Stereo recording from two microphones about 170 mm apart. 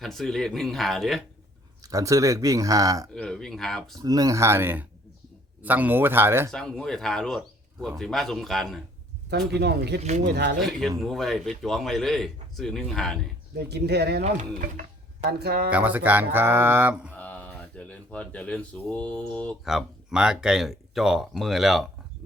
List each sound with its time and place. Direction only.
0.0 s speech: centre (ahead or behind)
1.8 s speech: 20° right (ahead or behind)
3.2 s speech: 5° left (ahead or behind)
3.9 s speech: 20° right (ahead or behind)
6.5 s speech: 5° left (ahead or behind)
9.5 s speech: 75° right (ahead or behind)
10.0 s speech: 45° right (ahead or behind)
10.2 s speech: 90° right
10.6 s speech: centre (ahead or behind)
13.6 s speech: 75° right (ahead or behind)
14.3 s speech: 45° right (ahead or behind)
15.2 s speech: 70° right (ahead or behind)
15.7 s speech: 10° right (ahead or behind)
17.2 s speech: 10° left (ahead or behind)